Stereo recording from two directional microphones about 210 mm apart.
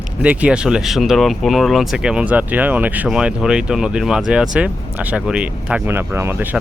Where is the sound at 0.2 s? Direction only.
5° right (ahead or behind).